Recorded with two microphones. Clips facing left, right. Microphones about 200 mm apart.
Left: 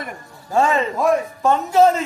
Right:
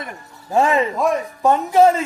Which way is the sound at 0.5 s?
15° right (ahead or behind).